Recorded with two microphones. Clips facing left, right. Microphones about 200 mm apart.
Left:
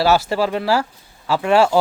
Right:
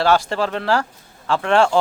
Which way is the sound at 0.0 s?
5° left (ahead or behind).